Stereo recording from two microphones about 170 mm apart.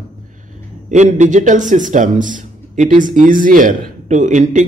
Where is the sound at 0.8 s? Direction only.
45° right (ahead or behind).